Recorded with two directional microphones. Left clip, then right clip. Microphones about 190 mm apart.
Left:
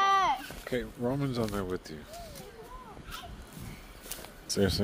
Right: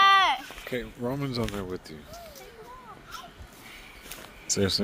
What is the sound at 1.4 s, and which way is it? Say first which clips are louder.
Speech: even; centre (ahead or behind).